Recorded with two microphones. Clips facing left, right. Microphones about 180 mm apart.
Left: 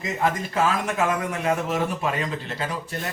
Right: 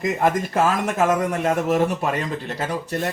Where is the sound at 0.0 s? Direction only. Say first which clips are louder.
Right 5 dB; 50° right (ahead or behind).